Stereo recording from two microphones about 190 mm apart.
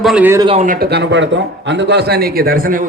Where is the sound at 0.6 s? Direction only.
45° right (ahead or behind).